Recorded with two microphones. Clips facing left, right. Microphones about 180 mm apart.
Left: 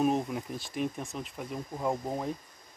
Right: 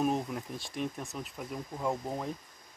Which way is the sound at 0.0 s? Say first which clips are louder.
Left 3 dB; 5° left (ahead or behind).